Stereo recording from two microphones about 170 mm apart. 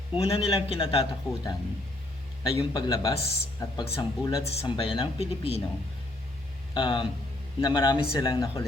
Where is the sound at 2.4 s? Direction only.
25° left (ahead or behind).